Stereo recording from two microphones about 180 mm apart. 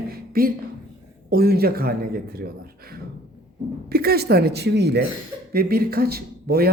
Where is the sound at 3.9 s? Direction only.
60° right (ahead or behind).